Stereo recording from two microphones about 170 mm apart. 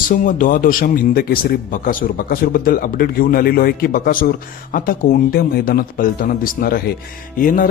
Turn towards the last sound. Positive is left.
turn(degrees=55)  # may be behind; listen again after turning